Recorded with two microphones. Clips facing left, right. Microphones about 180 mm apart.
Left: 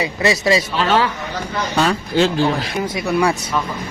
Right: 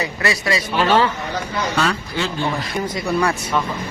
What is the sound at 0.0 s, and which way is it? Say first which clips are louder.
Speech: left 4 dB; 20° left (ahead or behind).